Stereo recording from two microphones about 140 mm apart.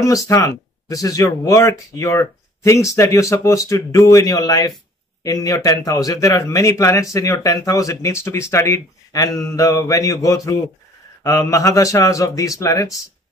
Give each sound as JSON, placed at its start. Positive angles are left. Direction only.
{"t": 0.0, "sound": "speech", "side_deg": 25}